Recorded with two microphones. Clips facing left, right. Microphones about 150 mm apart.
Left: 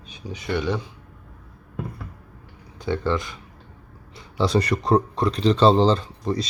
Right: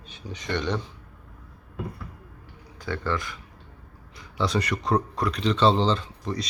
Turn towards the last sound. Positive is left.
turn(degrees=35)  # may be behind; listen again after turning